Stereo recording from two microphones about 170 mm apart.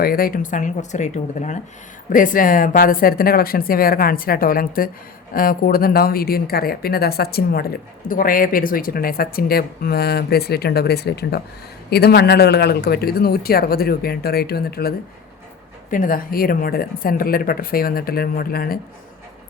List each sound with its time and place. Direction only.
0.0 s speech: 60° left (ahead or behind)